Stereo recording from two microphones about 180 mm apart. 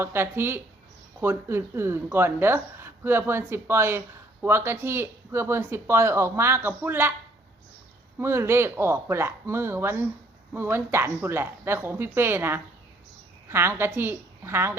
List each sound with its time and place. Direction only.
0.0 s a woman's voice: 15° right (ahead or behind)
8.2 s a woman's voice: 15° right (ahead or behind)